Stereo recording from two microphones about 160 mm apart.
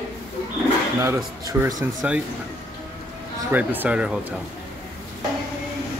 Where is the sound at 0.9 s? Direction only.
15° right (ahead or behind).